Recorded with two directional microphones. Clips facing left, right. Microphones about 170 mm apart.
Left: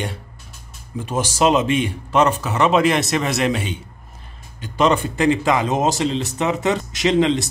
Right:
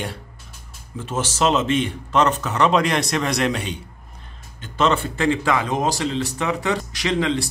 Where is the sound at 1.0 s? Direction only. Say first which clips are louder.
Left 3 dB; 15° left (ahead or behind).